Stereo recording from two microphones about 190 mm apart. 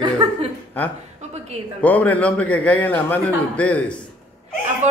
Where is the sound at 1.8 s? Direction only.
10° left (ahead or behind).